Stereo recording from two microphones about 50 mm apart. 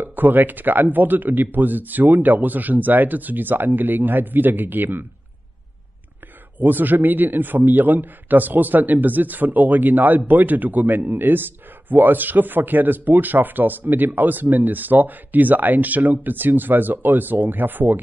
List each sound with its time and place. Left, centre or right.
0.0 s a man's voice: right
6.6 s a man's voice: right